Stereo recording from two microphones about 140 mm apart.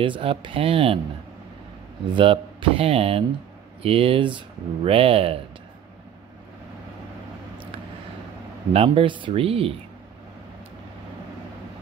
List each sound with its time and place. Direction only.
0.0 s speech: 40° right (ahead or behind)
2.1 s speech: 40° right (ahead or behind)
8.7 s speech: 40° right (ahead or behind)